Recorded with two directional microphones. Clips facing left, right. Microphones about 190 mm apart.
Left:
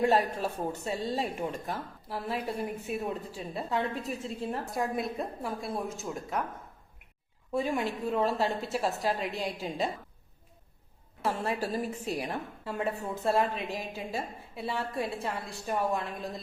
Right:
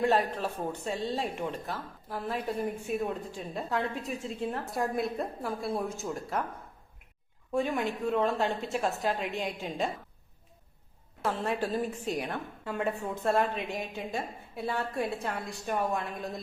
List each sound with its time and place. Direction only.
0.3 s a woman's voice: 10° left (ahead or behind)
7.5 s speech: 5° left (ahead or behind)
11.2 s a woman's voice: 5° left (ahead or behind)
11.9 s a woman's voice: 35° left (ahead or behind)
12.3 s speech: 5° left (ahead or behind)